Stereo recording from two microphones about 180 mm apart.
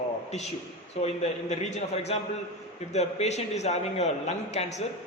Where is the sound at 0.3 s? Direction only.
40° left (ahead or behind).